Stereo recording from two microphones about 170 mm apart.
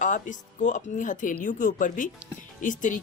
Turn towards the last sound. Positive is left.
turn(degrees=50)  # may be behind; listen again after turning